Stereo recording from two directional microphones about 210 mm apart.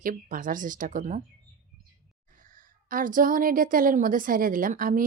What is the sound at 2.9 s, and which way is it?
A woman's voice, 40° right (ahead or behind).